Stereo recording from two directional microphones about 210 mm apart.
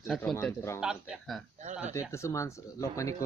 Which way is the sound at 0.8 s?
5° right (ahead or behind).